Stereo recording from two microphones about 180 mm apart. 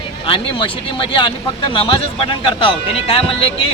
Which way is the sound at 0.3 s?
30° left (ahead or behind).